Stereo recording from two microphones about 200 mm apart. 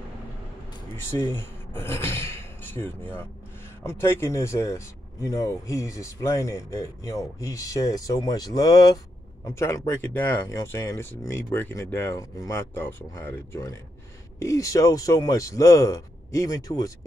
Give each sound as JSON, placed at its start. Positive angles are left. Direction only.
{"t": 1.3, "sound": "speech", "side_deg": 10}